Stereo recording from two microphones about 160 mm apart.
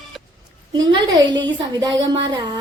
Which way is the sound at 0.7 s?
30° right (ahead or behind).